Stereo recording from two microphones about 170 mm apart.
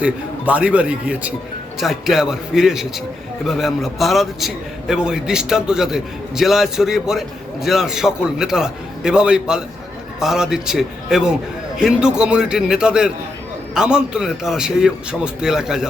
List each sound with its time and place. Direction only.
0.0 s a man's voice: 5° right (ahead or behind)